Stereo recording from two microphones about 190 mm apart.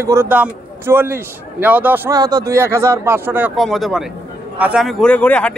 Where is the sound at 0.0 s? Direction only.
15° right (ahead or behind).